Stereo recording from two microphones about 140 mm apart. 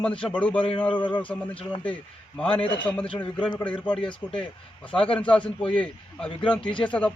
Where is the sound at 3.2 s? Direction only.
10° left (ahead or behind).